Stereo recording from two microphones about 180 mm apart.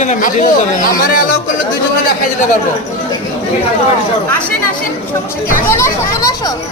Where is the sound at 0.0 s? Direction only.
40° left (ahead or behind).